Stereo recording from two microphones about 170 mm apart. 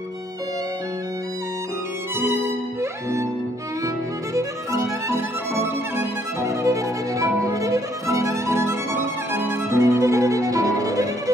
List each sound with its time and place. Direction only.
2.8 s music: 15° right (ahead or behind)
3.8 s violin: 20° right (ahead or behind)